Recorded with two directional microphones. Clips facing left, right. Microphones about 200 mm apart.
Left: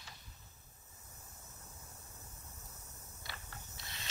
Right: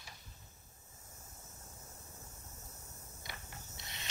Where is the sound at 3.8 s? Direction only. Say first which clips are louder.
Right 1 dB; 20° right (ahead or behind).